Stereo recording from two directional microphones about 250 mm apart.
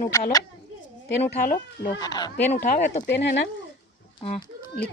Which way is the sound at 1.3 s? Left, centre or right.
Left.